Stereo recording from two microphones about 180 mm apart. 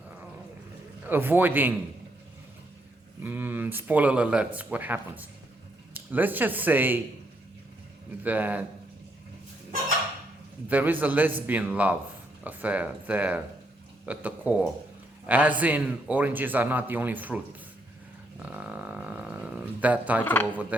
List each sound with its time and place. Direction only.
1.0 s a man's voice: 10° right (ahead or behind)
3.2 s a man's voice: 10° right (ahead or behind)
8.2 s a man's voice: 10° right (ahead or behind)
10.7 s a man's voice: 10° right (ahead or behind)
18.3 s a sound: 5° right (ahead or behind)
20.2 s speech: 10° left (ahead or behind)